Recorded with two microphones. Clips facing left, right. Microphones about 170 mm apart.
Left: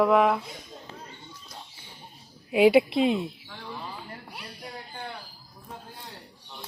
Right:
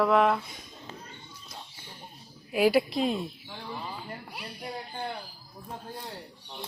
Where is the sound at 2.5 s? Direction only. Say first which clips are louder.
Left 5 dB; 20° left (ahead or behind).